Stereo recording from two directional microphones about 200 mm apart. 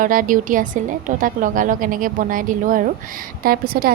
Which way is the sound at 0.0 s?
40° right (ahead or behind).